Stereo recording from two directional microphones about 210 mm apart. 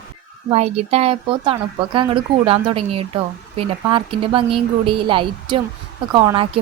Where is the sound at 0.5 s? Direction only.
30° right (ahead or behind).